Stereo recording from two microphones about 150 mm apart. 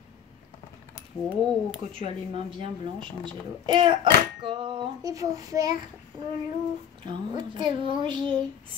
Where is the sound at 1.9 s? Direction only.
35° right (ahead or behind).